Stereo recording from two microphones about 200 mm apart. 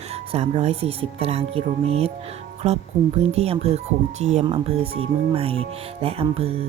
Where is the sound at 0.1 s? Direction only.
30° right (ahead or behind).